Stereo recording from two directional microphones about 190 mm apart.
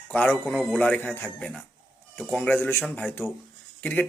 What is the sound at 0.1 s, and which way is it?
Speech, centre (ahead or behind).